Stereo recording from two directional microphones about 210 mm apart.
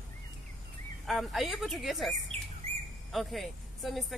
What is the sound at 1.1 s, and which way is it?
Speech, centre (ahead or behind).